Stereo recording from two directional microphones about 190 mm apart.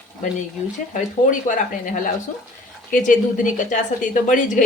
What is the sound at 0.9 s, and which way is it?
A woman's voice, 40° left (ahead or behind).